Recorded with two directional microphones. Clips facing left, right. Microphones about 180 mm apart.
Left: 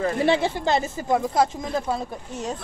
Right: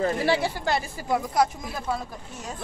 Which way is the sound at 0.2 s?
20° left (ahead or behind).